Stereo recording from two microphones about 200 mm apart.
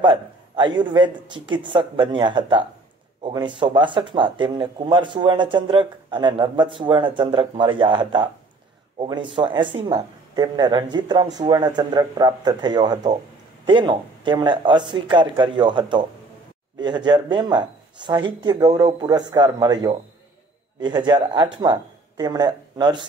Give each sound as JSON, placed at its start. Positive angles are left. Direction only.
{"t": 0.0, "sound": "speech", "side_deg": -25}